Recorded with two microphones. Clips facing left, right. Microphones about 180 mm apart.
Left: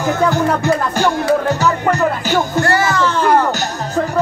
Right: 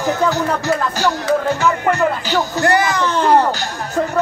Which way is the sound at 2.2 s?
50° left (ahead or behind).